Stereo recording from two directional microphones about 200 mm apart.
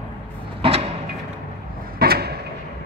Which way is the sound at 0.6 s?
30° right (ahead or behind).